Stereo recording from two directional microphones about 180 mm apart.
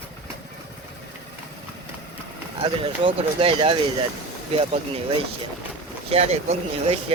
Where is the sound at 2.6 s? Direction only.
30° right (ahead or behind).